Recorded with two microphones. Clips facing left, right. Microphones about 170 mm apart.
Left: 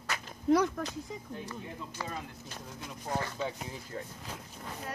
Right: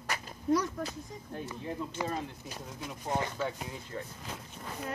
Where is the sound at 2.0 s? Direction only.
15° right (ahead or behind).